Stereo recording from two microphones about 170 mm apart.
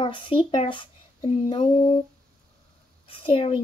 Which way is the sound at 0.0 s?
30° left (ahead or behind).